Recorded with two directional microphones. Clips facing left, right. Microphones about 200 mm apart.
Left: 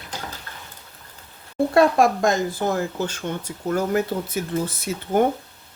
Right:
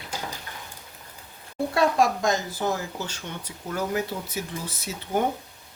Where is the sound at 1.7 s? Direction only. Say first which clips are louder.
Left 5 dB; 55° left (ahead or behind).